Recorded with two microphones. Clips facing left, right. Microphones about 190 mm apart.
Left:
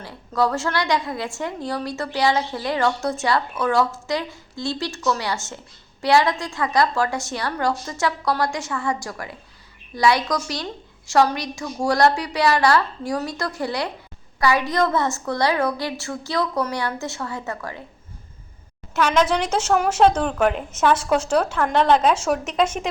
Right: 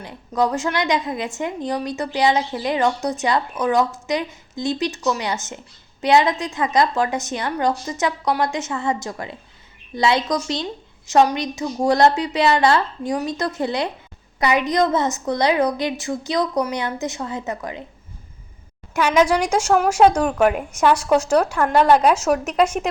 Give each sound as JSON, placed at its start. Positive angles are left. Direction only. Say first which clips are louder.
{"t": 0.0, "sound": "a woman's voice", "louder": "right 1 dB", "side_deg": -20}
{"t": 18.9, "sound": "a woman's voice", "louder": "right 2 dB", "side_deg": -10}